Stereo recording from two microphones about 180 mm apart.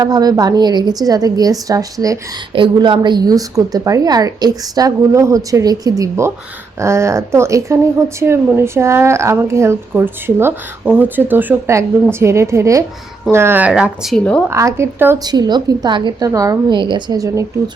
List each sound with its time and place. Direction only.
0.0 s a woman's voice: 20° right (ahead or behind); by 14.4 s 5° left (ahead or behind)
14.5 s a woman's voice: 15° right (ahead or behind)
15.2 s a woman's voice: 25° right (ahead or behind)